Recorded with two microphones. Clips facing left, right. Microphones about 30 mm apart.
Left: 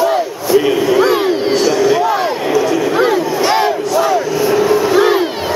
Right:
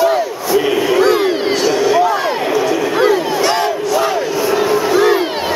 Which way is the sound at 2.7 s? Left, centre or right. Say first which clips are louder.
Even; centre.